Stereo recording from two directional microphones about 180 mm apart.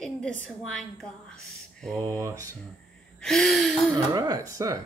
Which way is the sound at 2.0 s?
15° right (ahead or behind).